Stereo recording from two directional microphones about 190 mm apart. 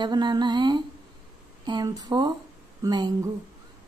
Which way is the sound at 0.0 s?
20° right (ahead or behind).